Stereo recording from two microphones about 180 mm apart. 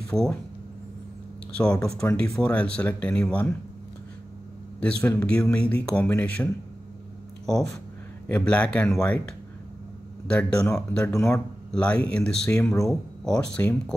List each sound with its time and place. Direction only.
0.1 s speech: 5° left (ahead or behind)
1.6 s speech: 5° left (ahead or behind)
4.7 s speech: 10° left (ahead or behind)
8.3 s speech: 10° left (ahead or behind)
10.2 s speech: 5° left (ahead or behind)
11.1 s speech: 15° left (ahead or behind)